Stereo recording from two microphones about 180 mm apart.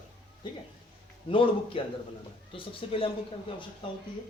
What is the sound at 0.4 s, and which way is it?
Speech, 25° left (ahead or behind).